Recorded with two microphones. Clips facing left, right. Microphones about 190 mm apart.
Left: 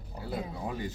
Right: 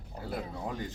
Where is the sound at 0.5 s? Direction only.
5° left (ahead or behind).